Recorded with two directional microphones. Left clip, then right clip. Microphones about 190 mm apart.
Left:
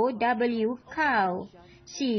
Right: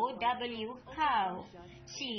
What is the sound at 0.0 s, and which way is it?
Speech, 60° left (ahead or behind).